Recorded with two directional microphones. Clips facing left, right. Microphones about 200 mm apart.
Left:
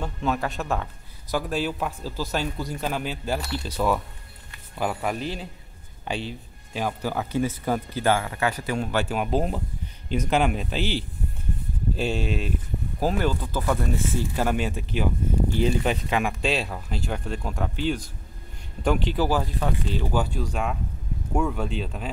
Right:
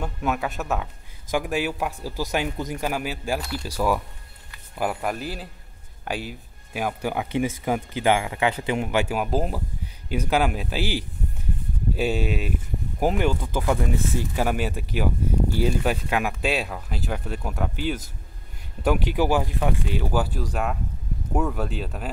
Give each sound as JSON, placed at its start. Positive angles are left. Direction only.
{"t": 0.0, "sound": "speech", "side_deg": -10}
{"t": 21.3, "sound": "speech", "side_deg": -5}